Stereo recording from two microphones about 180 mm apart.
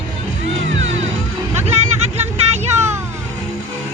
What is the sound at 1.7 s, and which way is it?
Vehicle, 40° right (ahead or behind).